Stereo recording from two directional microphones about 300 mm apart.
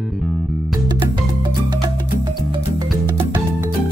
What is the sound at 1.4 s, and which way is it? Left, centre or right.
Music, centre.